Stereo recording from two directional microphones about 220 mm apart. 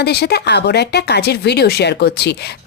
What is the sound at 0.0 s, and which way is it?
Speech, 45° left (ahead or behind).